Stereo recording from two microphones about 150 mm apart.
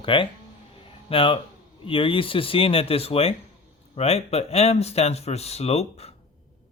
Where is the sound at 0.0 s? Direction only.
35° left (ahead or behind).